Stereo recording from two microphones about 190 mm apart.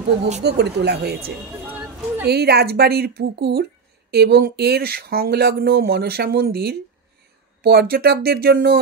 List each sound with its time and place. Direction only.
0.4 s speech: 60° right (ahead or behind)
1.7 s a sound: 10° right (ahead or behind)
2.2 s speech: 55° right (ahead or behind)